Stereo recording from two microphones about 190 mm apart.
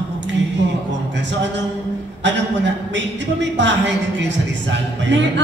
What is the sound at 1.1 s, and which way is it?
A man's voice, 70° right (ahead or behind).